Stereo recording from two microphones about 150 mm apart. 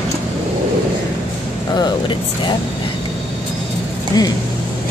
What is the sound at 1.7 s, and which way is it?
Speech, 30° left (ahead or behind).